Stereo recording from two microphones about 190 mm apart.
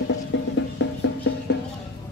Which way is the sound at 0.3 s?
70° left (ahead or behind).